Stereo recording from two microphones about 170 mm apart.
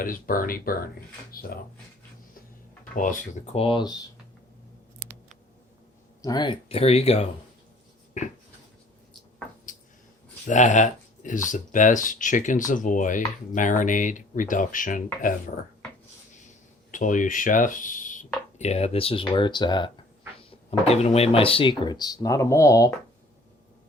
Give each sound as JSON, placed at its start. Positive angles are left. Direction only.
{"t": 0.0, "sound": "speech", "side_deg": 55}
{"t": 2.9, "sound": "speech", "side_deg": 50}
{"t": 6.2, "sound": "speech", "side_deg": 25}
{"t": 10.5, "sound": "speech", "side_deg": 50}
{"t": 16.9, "sound": "speech", "side_deg": 50}
{"t": 18.6, "sound": "speech", "side_deg": 40}
{"t": 20.7, "sound": "speech", "side_deg": 40}